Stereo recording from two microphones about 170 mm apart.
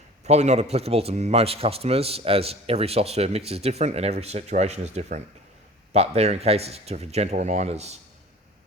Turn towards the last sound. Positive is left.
turn(degrees=-40)  # may be behind; listen again after turning